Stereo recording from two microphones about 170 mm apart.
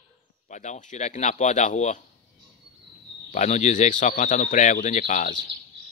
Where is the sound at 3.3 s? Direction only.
45° left (ahead or behind).